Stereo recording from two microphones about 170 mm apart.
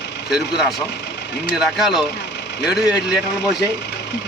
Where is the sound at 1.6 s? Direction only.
Centre (ahead or behind).